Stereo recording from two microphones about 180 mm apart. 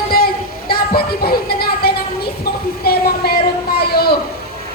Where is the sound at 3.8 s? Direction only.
60° left (ahead or behind).